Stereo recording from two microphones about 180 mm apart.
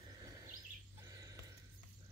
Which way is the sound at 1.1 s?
20° right (ahead or behind).